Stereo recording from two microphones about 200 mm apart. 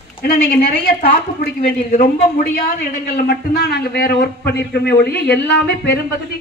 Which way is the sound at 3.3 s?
55° left (ahead or behind).